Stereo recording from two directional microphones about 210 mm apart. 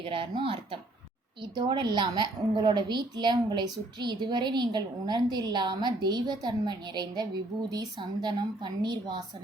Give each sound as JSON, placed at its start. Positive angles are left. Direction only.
{"t": 0.0, "sound": "a woman's voice", "side_deg": -25}